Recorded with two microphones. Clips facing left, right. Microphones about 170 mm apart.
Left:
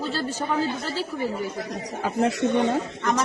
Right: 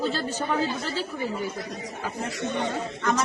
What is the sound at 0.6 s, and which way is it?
Speech, 40° left (ahead or behind).